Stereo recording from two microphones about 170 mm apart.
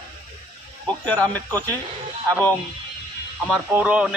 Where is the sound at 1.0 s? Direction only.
10° left (ahead or behind).